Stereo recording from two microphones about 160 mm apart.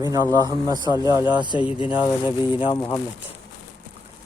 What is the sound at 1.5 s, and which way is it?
Speech, 35° left (ahead or behind).